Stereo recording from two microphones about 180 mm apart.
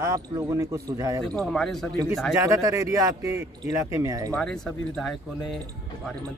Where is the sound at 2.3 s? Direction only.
20° right (ahead or behind).